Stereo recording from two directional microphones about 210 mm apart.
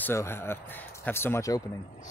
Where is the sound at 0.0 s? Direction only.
10° left (ahead or behind).